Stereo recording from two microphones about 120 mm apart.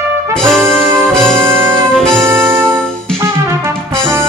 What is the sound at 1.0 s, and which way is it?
Music, 5° left (ahead or behind).